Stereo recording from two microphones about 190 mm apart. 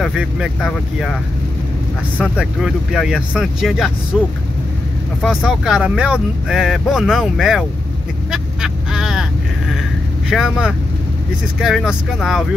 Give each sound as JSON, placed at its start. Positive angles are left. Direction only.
{"t": 0.0, "sound": "speech", "side_deg": 0}
{"t": 2.1, "sound": "speech", "side_deg": 0}
{"t": 5.2, "sound": "speech", "side_deg": 0}
{"t": 8.3, "sound": "vehicle", "side_deg": -5}
{"t": 10.3, "sound": "speech", "side_deg": -5}